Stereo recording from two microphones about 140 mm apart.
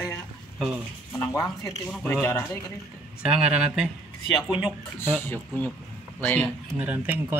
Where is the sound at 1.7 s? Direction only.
Centre (ahead or behind).